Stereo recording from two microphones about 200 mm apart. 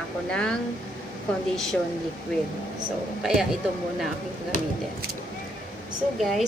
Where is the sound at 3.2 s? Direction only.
Centre (ahead or behind).